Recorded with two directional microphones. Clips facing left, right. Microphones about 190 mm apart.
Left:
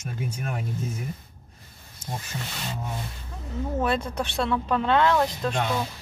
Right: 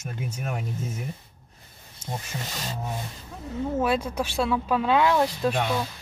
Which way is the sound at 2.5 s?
40° right (ahead or behind).